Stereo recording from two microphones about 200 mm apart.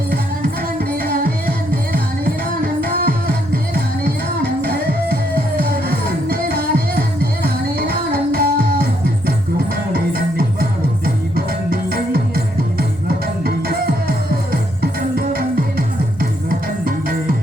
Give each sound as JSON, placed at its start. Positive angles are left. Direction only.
{"t": 1.0, "sound": "music", "side_deg": -50}
{"t": 2.8, "sound": "music", "side_deg": -50}
{"t": 4.6, "sound": "music", "side_deg": -50}